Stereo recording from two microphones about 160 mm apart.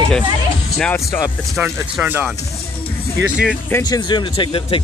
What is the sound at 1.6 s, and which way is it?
Speech, 10° right (ahead or behind).